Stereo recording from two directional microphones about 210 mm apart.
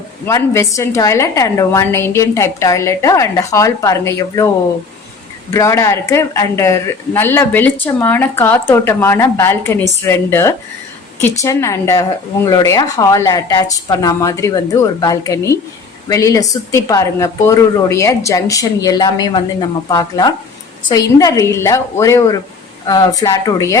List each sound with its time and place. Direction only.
0.3 s speech: 15° left (ahead or behind)
5.5 s speech: 15° left (ahead or behind)